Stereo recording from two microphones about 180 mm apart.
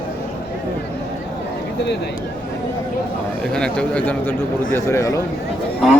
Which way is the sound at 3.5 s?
5° left (ahead or behind).